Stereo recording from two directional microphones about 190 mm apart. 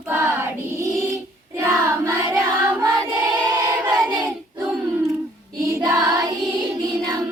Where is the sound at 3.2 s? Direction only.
15° right (ahead or behind).